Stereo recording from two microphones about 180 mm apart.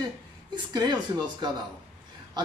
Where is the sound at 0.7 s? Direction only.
25° right (ahead or behind).